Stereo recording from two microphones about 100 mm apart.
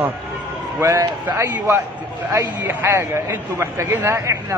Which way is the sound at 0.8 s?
35° right (ahead or behind).